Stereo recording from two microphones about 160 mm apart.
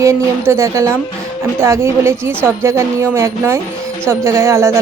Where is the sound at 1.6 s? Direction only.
15° right (ahead or behind).